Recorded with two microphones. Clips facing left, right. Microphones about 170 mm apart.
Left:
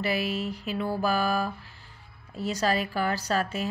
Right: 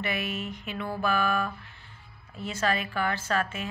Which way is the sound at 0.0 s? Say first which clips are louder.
Left 4 dB; 35° left (ahead or behind).